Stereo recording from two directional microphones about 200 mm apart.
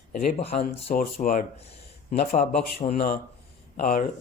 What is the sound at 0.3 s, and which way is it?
Speech, 30° left (ahead or behind).